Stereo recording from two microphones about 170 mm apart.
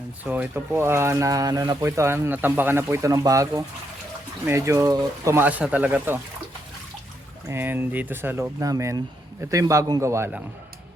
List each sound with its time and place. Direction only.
0.3 s speech: 10° right (ahead or behind)
7.4 s speech: 15° right (ahead or behind)